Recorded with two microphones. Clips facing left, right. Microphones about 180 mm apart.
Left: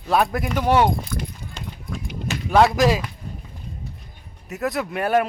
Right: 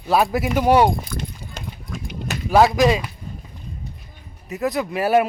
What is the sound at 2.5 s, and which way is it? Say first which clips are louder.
Speech: right 1 dB; centre (ahead or behind).